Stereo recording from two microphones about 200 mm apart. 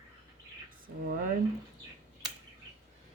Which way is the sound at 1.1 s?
45° right (ahead or behind).